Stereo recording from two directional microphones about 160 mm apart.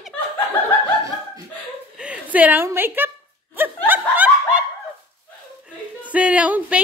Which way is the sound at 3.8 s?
10° right (ahead or behind).